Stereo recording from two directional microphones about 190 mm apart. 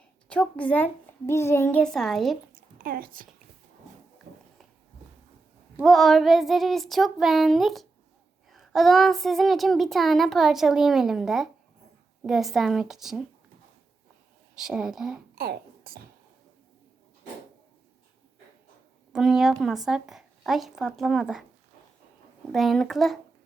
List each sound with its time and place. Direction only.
0.3 s a woman's voice: 5° left (ahead or behind)
2.5 s a sound: 50° right (ahead or behind)
5.7 s a child's voice: centre (ahead or behind)
14.5 s a child's voice: 5° right (ahead or behind)
15.4 s a sound: 50° right (ahead or behind)
19.1 s a child's voice: centre (ahead or behind)
22.5 s a child's voice: centre (ahead or behind)